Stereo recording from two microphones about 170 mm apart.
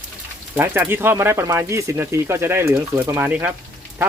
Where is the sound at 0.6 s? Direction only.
10° right (ahead or behind).